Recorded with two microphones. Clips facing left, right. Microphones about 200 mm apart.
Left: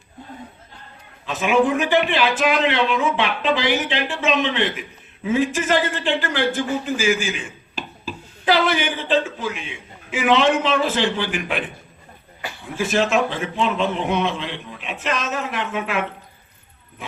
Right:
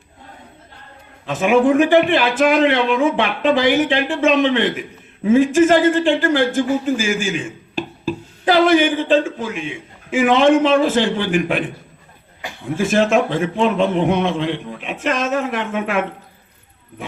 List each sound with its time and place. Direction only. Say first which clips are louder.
1.3 s speech: right 4 dB; 50° right (ahead or behind)
12.7 s speech: right 4 dB; 50° right (ahead or behind)